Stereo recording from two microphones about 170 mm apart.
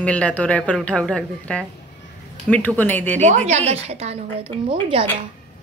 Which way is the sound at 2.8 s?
10° left (ahead or behind).